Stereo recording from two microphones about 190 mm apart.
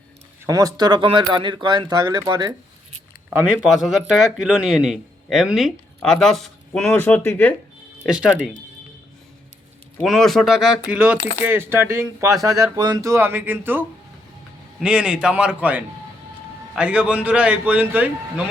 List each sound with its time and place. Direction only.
0.4 s speech: 20° right (ahead or behind)
3.2 s speech: 5° right (ahead or behind); by 7.5 s 10° left (ahead or behind)
8.0 s speech: 5° right (ahead or behind)
10.0 s speech: centre (ahead or behind)